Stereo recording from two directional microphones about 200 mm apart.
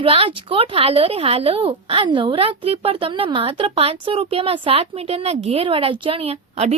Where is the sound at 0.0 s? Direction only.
25° right (ahead or behind).